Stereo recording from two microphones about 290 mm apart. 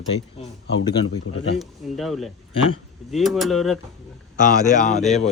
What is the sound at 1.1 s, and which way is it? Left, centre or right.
Speech, left.